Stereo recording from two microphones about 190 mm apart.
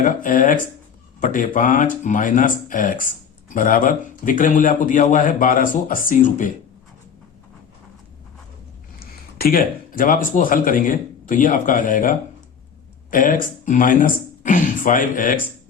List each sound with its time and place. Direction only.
0.0 s speech: 45° left (ahead or behind)
9.4 s speech: 50° left (ahead or behind)